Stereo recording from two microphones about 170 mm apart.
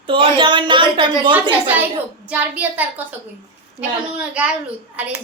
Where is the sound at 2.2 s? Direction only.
10° right (ahead or behind).